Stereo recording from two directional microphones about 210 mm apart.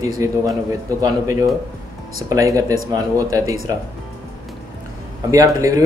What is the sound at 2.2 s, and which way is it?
A man's voice, 15° right (ahead or behind).